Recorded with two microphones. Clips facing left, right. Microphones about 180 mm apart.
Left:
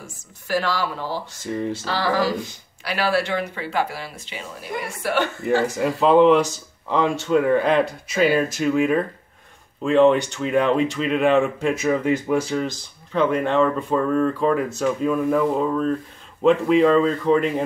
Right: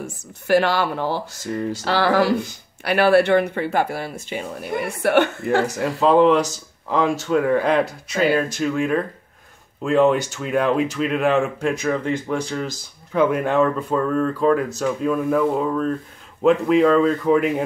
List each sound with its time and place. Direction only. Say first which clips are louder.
0.0 s speech: right 9 dB; 65° right (ahead or behind)
1.4 s speech: left 2 dB; centre (ahead or behind)
1.9 s speech: right 5 dB; 65° right (ahead or behind)
5.4 s speech: even; centre (ahead or behind)
13.1 s speech: right 1 dB; 5° right (ahead or behind)